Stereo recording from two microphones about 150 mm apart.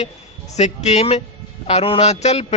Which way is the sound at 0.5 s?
50° left (ahead or behind).